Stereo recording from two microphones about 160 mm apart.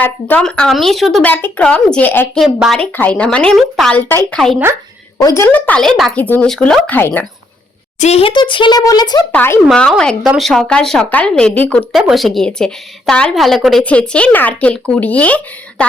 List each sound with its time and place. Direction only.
0.0 s speech: 10° left (ahead or behind)
4.1 s speech: 15° left (ahead or behind)
5.4 s speech: 10° left (ahead or behind)
7.9 s speech: 45° left (ahead or behind); by 9.2 s 25° left (ahead or behind)
9.3 s speech: 15° left (ahead or behind)